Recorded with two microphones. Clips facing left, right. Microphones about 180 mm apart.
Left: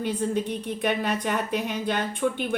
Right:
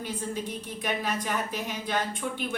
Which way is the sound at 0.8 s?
60° left (ahead or behind).